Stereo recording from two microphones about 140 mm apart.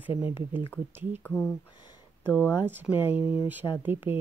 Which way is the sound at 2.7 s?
15° right (ahead or behind).